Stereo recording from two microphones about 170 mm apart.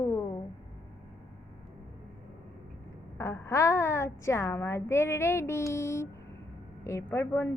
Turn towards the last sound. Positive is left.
turn(degrees=15)  # may be behind; listen again after turning